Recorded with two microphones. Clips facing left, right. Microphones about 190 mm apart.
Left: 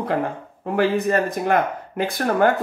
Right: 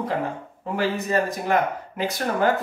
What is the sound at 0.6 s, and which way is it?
Speech, 55° left (ahead or behind).